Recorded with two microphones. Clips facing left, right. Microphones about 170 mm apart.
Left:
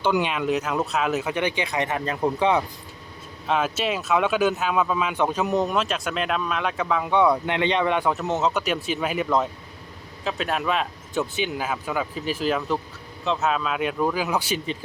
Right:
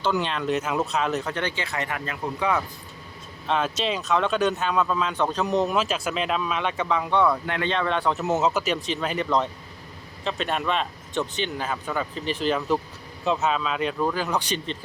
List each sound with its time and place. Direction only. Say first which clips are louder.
0.0 s speech: left 2 dB; 10° left (ahead or behind)
2.0 s speech: left 5 dB; 30° left (ahead or behind)
3.4 s speech: left 1 dB; 5° left (ahead or behind)
7.2 s speech: left 5 dB; 20° left (ahead or behind)
8.1 s speech: right 1 dB; 5° right (ahead or behind)